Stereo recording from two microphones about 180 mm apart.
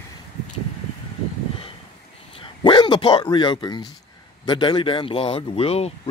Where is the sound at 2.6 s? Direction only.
25° left (ahead or behind).